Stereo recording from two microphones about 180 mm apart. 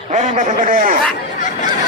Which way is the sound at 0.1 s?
45° right (ahead or behind).